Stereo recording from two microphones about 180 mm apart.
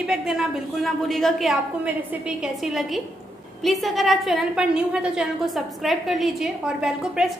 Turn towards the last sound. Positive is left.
turn(degrees=0)  # may be behind; listen again after turning